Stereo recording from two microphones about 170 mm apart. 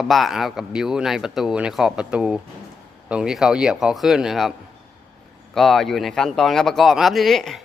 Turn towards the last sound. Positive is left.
turn(degrees=0)  # may be behind; listen again after turning